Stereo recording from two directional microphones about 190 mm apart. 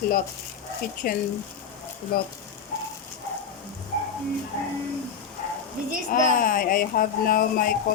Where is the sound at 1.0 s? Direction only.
45° left (ahead or behind).